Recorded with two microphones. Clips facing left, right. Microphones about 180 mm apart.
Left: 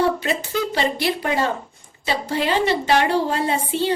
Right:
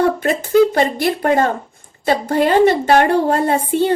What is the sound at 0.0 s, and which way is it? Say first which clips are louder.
A woman's voice: right 4 dB; 50° right (ahead or behind).